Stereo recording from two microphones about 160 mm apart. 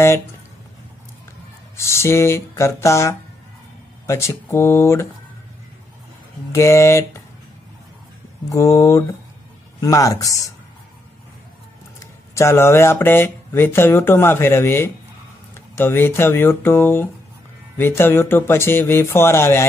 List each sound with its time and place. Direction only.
1.8 s speech: 15° left (ahead or behind)
6.5 s speech: 20° left (ahead or behind)
8.5 s speech: 20° left (ahead or behind)
12.4 s speech: 15° left (ahead or behind)